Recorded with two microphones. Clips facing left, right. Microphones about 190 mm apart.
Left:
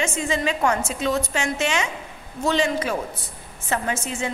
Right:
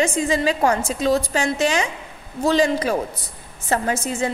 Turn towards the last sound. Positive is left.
turn(degrees=-40)  # may be behind; listen again after turning